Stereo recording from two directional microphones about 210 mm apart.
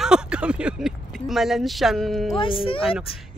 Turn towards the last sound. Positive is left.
turn(degrees=0)  # may be behind; listen again after turning